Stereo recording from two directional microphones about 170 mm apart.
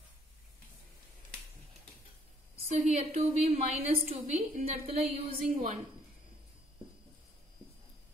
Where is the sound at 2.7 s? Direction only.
40° right (ahead or behind).